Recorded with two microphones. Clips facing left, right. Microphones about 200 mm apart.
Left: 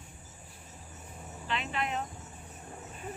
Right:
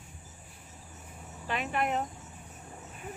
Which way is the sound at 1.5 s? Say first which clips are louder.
Right 3 dB; 50° right (ahead or behind).